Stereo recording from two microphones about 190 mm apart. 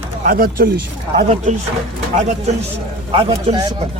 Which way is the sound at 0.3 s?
50° right (ahead or behind).